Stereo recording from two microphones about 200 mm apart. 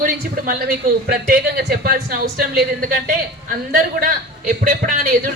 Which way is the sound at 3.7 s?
45° right (ahead or behind).